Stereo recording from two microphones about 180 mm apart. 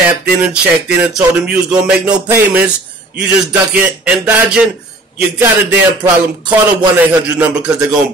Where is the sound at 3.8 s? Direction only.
5° right (ahead or behind).